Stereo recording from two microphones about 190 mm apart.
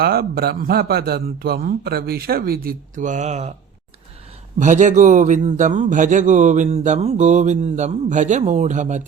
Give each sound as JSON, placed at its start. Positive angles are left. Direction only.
{"t": 0.0, "sound": "a man's voice", "side_deg": -55}
{"t": 4.6, "sound": "speech", "side_deg": -40}